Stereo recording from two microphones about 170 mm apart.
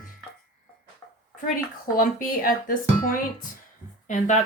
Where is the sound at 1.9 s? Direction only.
55° left (ahead or behind).